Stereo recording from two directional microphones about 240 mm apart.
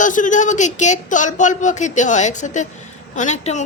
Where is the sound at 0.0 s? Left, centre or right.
Left.